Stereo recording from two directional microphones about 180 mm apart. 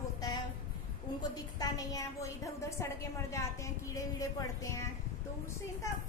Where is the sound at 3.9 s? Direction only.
20° left (ahead or behind).